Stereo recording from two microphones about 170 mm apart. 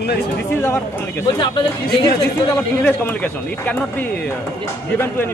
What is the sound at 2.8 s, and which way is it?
Speech, 10° left (ahead or behind).